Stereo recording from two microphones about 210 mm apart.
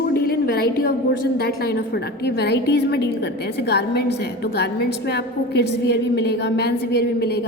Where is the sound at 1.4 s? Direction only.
50° left (ahead or behind).